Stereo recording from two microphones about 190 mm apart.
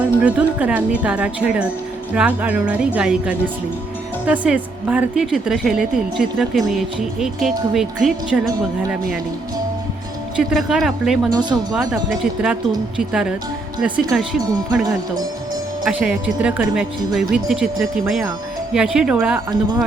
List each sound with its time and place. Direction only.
0.0 s a woman's voice: 5° right (ahead or behind)
10.3 s a woman's voice: centre (ahead or behind)
11.3 s speech: 20° right (ahead or behind)
11.7 s a woman's voice: centre (ahead or behind)
15.8 s a woman's voice: 5° right (ahead or behind)